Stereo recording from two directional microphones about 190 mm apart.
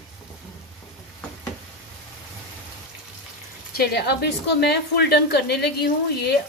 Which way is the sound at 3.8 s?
60° left (ahead or behind).